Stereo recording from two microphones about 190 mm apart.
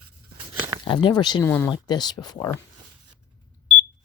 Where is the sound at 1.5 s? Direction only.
10° left (ahead or behind).